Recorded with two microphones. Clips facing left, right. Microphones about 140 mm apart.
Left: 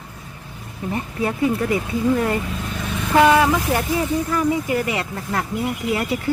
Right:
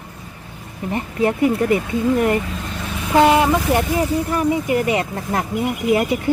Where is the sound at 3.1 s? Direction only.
25° right (ahead or behind).